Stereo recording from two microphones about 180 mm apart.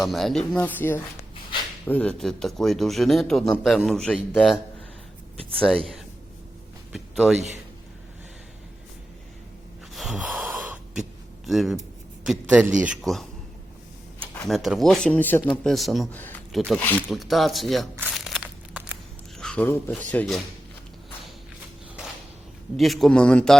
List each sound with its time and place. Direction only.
0.0 s speech: centre (ahead or behind)
6.9 s a sound: 5° right (ahead or behind)
7.3 s a man's voice: 40° right (ahead or behind)
9.9 s gasp: centre (ahead or behind)
11.4 s a man's voice: centre (ahead or behind)
14.3 s speech: centre (ahead or behind)
16.1 s a sound: 10° left (ahead or behind)
16.6 s speech: centre (ahead or behind)
18.1 s crumpling: centre (ahead or behind)
19.4 s speech: 5° left (ahead or behind)
22.8 s speech: centre (ahead or behind)